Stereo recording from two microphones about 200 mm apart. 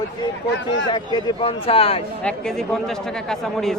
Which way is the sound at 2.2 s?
5° left (ahead or behind).